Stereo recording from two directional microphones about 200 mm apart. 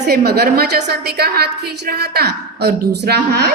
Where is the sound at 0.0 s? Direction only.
50° right (ahead or behind).